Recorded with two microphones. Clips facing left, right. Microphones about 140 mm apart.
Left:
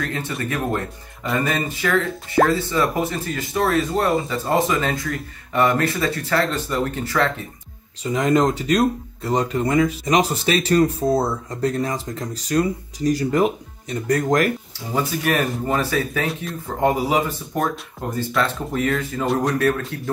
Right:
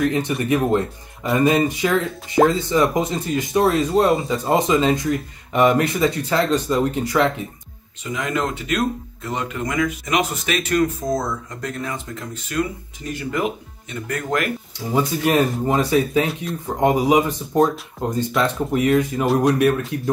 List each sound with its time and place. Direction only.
0.0 s speech: 20° right (ahead or behind)
8.0 s speech: 35° left (ahead or behind)
15.0 s speech: 20° right (ahead or behind)
19.2 s speech: centre (ahead or behind)
19.9 s speech: 15° right (ahead or behind)